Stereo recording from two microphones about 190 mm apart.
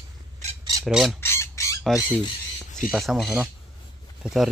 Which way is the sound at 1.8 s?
5° right (ahead or behind).